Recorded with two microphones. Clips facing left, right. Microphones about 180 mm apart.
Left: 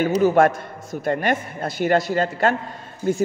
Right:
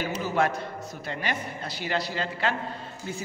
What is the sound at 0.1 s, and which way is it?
A man's voice, 50° left (ahead or behind).